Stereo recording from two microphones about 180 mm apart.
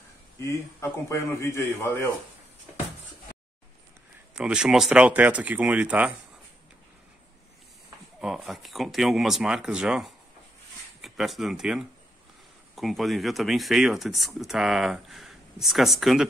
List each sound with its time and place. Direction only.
0.4 s a man's voice: 15° left (ahead or behind)
4.4 s speech: 5° right (ahead or behind)
8.2 s speech: centre (ahead or behind)